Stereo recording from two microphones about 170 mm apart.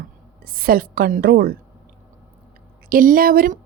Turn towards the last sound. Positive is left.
turn(degrees=-55)  # may be behind; listen again after turning